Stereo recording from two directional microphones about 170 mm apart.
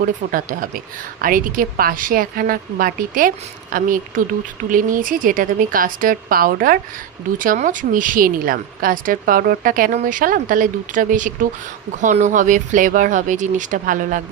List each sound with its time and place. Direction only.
0.0 s a woman's voice: 55° right (ahead or behind)